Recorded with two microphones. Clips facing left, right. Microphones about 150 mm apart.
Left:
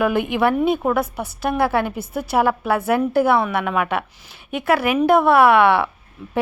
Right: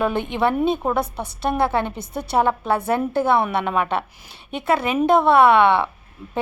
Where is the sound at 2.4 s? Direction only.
25° right (ahead or behind).